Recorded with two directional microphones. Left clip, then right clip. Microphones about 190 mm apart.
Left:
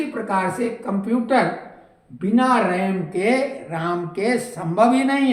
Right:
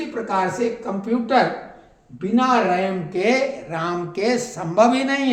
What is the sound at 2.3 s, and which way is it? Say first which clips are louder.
Speech: even; 15° right (ahead or behind).